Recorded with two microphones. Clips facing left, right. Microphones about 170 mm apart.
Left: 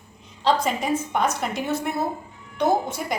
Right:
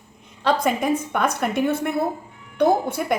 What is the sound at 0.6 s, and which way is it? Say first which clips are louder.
A woman's voice: right 3 dB; 55° right (ahead or behind).